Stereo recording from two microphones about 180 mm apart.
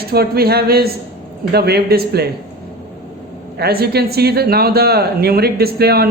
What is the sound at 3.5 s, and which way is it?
Speech, 60° right (ahead or behind).